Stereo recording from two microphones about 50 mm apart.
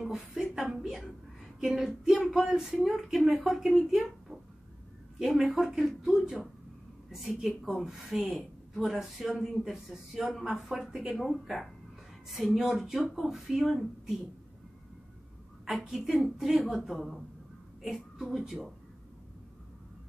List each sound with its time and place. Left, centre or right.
0.0 s speech: centre
5.2 s speech: centre
16.1 s speech: centre